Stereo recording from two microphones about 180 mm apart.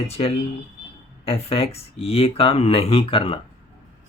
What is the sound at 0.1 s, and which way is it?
Speech, 35° left (ahead or behind).